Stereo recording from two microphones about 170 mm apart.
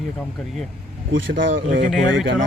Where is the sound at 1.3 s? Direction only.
60° right (ahead or behind).